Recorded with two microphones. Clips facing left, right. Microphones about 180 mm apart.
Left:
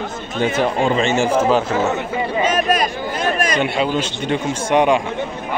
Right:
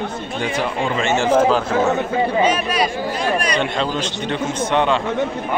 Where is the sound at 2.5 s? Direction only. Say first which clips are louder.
Left 1 dB; 45° left (ahead or behind).